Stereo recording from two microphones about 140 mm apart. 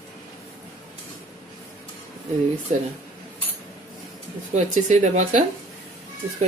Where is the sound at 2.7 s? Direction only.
60° right (ahead or behind).